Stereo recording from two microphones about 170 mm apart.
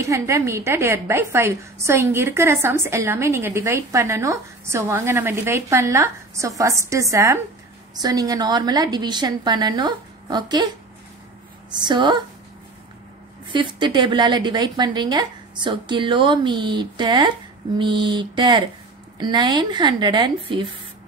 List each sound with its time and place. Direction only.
0.0 s a woman's voice: 15° right (ahead or behind)
11.7 s a woman's voice: 25° right (ahead or behind)
13.5 s a woman's voice: 30° right (ahead or behind)